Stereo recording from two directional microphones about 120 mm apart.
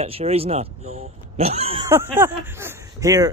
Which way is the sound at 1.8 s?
20° right (ahead or behind).